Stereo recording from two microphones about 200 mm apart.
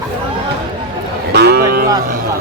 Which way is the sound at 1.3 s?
55° right (ahead or behind).